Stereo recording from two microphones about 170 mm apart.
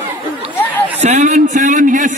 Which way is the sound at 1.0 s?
45° right (ahead or behind).